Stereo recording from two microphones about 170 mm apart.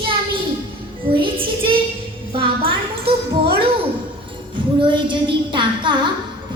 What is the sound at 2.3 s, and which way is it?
Music, 30° right (ahead or behind).